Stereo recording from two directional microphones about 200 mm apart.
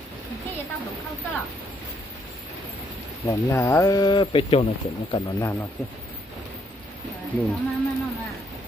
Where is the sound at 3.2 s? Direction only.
15° left (ahead or behind).